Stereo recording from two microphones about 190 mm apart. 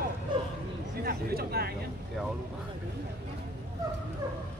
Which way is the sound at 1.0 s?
55° right (ahead or behind).